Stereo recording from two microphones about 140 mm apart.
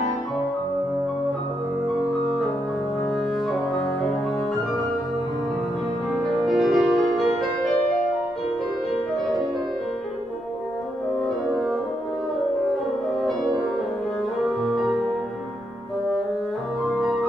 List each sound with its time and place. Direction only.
6.2 s music: centre (ahead or behind)
14.6 s music: centre (ahead or behind)